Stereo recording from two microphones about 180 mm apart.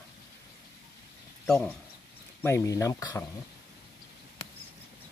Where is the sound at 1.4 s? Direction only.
5° left (ahead or behind).